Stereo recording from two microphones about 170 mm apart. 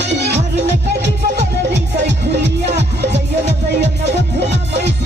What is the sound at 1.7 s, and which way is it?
Music, 90° right.